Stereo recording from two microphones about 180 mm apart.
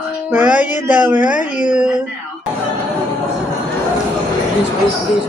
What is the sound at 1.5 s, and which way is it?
Speech, 45° left (ahead or behind).